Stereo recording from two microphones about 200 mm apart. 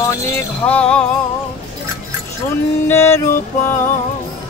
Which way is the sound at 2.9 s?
15° left (ahead or behind).